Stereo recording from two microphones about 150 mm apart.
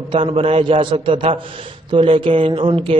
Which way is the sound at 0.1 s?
40° right (ahead or behind).